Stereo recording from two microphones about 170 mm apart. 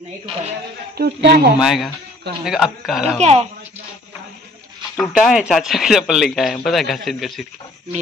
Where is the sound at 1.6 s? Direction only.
Centre (ahead or behind).